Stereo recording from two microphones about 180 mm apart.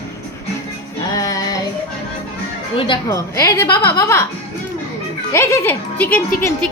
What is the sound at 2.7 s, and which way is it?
A woman's voice, 20° left (ahead or behind).